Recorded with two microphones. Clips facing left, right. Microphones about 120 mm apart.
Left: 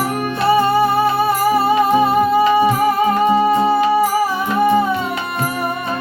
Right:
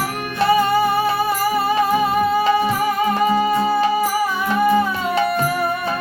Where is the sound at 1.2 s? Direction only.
25° left (ahead or behind).